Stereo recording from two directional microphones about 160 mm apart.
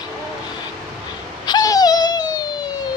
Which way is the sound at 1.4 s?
25° left (ahead or behind).